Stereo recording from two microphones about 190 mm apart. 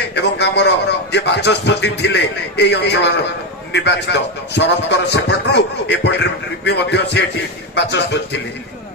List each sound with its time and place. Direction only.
0.1 s a man's voice: 65° left (ahead or behind)